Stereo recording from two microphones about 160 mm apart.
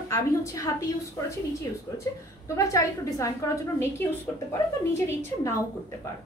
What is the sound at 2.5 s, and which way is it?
A woman's voice, 20° left (ahead or behind).